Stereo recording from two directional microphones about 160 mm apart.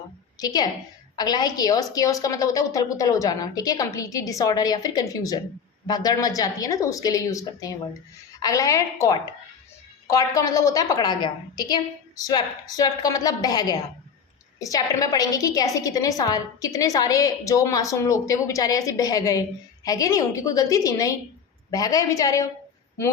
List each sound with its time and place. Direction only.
0.3 s a woman's voice: 25° left (ahead or behind)